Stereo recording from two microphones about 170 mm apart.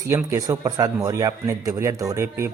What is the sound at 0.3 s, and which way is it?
A man's voice, 20° right (ahead or behind).